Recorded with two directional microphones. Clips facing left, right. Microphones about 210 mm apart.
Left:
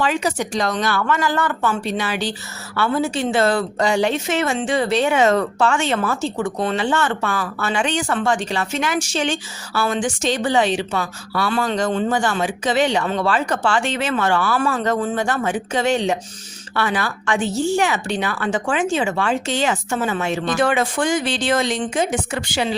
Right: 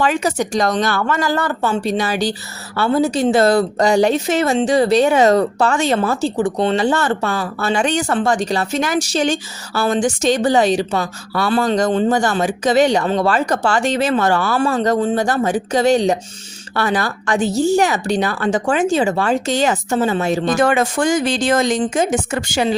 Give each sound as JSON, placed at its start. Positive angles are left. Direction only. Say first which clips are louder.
{"t": 0.0, "sound": "a woman's voice", "louder": "right 3 dB", "side_deg": -45}